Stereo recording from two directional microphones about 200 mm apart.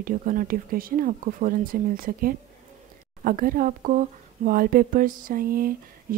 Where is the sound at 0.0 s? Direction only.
45° right (ahead or behind).